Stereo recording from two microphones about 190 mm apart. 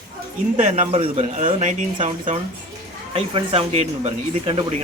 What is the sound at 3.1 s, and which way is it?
Speech, 30° right (ahead or behind).